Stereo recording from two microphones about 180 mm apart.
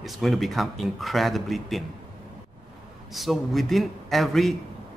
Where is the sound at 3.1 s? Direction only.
Centre (ahead or behind).